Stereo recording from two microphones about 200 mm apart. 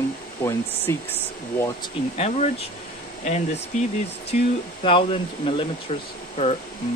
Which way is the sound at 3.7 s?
35° left (ahead or behind).